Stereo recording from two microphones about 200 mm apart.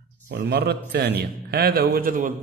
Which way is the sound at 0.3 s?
55° right (ahead or behind).